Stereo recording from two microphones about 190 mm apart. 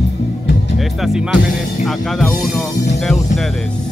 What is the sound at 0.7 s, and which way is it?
Speech, centre (ahead or behind).